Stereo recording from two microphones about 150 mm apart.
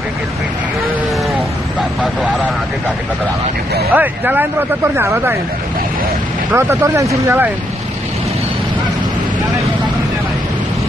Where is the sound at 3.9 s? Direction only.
10° right (ahead or behind).